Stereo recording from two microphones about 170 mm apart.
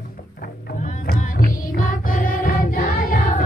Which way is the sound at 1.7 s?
55° left (ahead or behind).